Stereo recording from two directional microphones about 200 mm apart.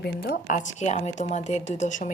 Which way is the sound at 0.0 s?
45° left (ahead or behind).